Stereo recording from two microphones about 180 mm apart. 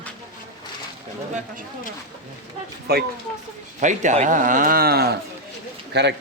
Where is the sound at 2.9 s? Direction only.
60° right (ahead or behind).